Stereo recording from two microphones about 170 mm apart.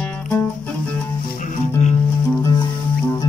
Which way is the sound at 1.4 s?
45° left (ahead or behind).